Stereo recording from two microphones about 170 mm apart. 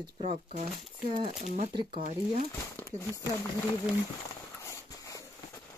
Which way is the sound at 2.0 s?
50° right (ahead or behind).